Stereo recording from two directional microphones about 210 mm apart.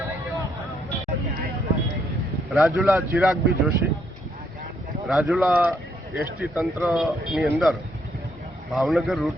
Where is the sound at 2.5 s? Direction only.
Centre (ahead or behind).